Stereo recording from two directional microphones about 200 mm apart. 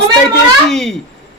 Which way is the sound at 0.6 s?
Centre (ahead or behind).